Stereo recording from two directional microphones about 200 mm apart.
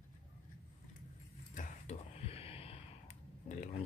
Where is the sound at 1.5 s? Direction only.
35° left (ahead or behind).